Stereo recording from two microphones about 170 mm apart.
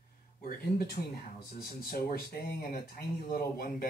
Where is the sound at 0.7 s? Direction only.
65° left (ahead or behind).